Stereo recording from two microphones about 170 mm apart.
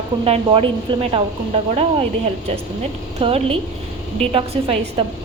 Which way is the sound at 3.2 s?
35° right (ahead or behind).